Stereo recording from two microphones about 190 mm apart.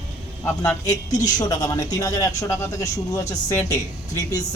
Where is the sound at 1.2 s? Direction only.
20° left (ahead or behind).